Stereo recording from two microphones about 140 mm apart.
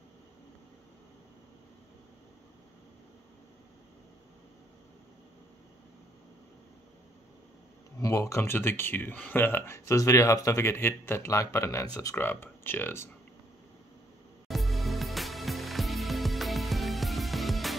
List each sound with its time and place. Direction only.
8.0 s speech: 20° left (ahead or behind)
14.5 s music: centre (ahead or behind)